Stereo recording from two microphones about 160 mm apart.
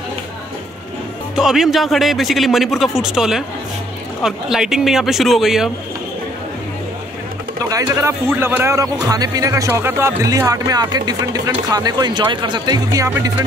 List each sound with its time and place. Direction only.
1.3 s speech: 5° right (ahead or behind)
7.7 s speech: 20° right (ahead or behind)